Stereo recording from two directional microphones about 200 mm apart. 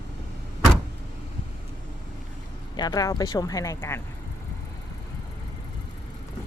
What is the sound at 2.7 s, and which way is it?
A woman's voice, 20° left (ahead or behind).